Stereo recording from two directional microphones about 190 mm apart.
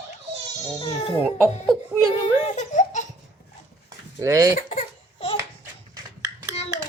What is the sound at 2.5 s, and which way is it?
Laughter, 40° left (ahead or behind).